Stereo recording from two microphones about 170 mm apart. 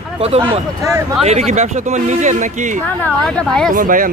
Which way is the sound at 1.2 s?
40° right (ahead or behind).